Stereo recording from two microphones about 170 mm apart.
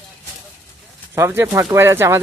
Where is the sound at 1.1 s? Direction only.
15° right (ahead or behind).